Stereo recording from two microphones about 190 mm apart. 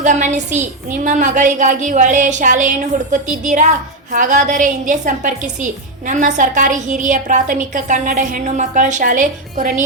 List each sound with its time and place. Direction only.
0.0 s a woman's voice: 40° right (ahead or behind)